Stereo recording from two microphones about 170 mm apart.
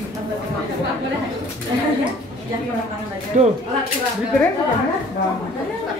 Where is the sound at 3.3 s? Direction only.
45° right (ahead or behind).